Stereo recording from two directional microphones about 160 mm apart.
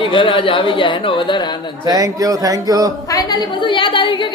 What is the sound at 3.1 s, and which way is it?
A woman's voice, 25° left (ahead or behind).